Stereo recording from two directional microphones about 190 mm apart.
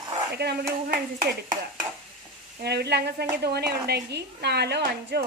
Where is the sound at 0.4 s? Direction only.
60° right (ahead or behind).